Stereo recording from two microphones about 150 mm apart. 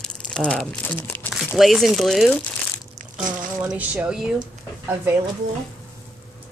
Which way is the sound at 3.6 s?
10° right (ahead or behind).